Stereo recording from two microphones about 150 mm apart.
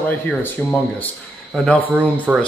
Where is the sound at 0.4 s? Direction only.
10° left (ahead or behind).